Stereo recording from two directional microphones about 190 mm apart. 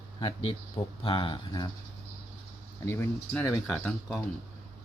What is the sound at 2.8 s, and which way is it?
Speech, 10° left (ahead or behind).